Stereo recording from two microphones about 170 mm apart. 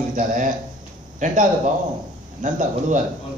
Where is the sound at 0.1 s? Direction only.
50° right (ahead or behind).